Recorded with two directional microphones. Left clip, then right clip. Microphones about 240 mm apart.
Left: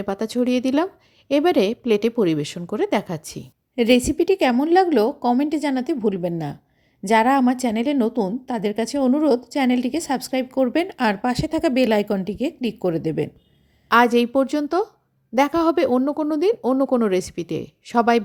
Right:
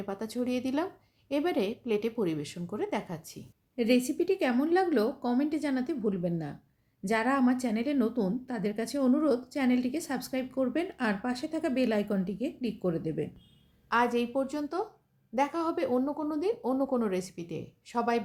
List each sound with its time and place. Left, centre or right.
0.0 s a woman's voice: left